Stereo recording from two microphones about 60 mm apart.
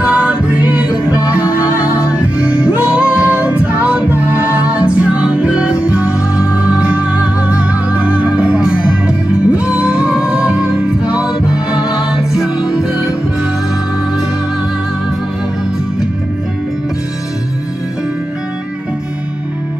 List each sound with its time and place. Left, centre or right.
0.0 s music: centre